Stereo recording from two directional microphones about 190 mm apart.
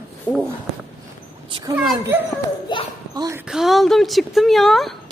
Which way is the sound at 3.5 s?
Centre (ahead or behind).